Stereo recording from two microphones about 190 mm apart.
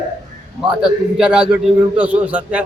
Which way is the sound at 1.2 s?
5° right (ahead or behind).